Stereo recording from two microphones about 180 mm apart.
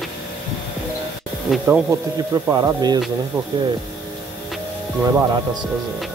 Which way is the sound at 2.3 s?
20° right (ahead or behind).